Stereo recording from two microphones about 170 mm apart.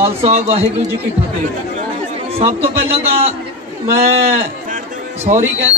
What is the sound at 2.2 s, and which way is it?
Speech, 35° right (ahead or behind).